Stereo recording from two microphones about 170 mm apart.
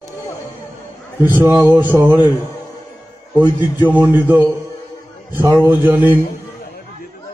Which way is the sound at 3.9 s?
10° right (ahead or behind).